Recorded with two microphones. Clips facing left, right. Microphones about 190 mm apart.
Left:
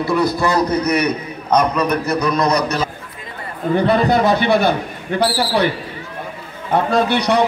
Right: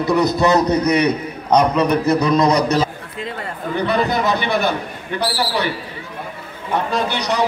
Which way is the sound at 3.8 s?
50° left (ahead or behind).